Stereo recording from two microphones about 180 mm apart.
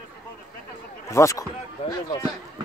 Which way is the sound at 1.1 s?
15° left (ahead or behind).